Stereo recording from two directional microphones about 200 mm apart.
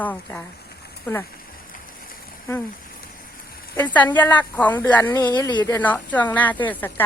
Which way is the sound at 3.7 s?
10° left (ahead or behind).